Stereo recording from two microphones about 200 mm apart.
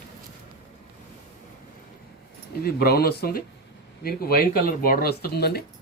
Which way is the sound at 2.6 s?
50° left (ahead or behind).